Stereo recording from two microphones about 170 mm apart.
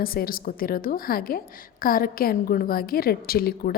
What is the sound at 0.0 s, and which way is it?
A woman's voice, 60° left (ahead or behind).